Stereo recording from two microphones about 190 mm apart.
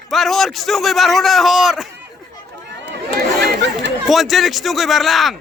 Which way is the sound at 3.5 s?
65° right (ahead or behind).